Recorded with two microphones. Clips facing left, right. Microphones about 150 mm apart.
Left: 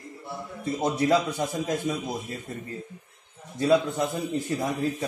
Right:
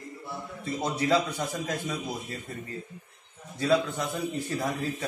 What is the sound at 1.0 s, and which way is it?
A man's voice, 15° left (ahead or behind).